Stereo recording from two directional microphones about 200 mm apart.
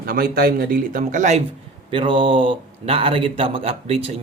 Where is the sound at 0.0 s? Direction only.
45° right (ahead or behind).